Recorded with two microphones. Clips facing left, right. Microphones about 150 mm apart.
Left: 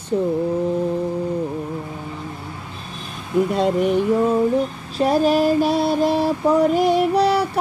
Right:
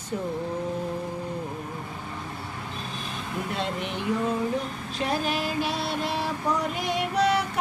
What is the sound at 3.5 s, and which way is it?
Speech, 45° left (ahead or behind).